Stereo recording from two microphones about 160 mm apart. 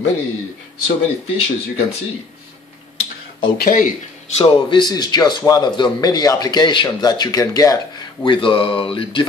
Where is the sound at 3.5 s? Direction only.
65° left (ahead or behind).